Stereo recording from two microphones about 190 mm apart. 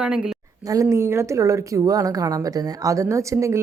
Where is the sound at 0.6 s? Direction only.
15° right (ahead or behind).